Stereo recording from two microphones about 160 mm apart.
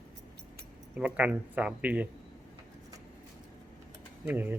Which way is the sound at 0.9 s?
10° right (ahead or behind).